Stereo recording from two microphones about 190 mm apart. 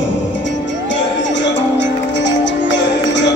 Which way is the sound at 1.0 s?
70° left (ahead or behind).